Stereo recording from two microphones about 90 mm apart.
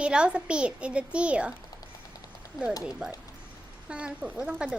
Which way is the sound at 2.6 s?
45° left (ahead or behind).